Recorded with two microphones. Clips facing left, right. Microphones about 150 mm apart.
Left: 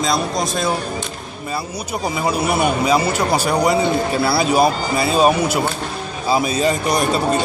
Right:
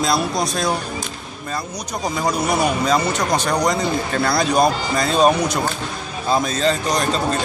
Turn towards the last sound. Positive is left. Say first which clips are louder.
# left 3 dB
turn(degrees=10)  # may be behind; listen again after turning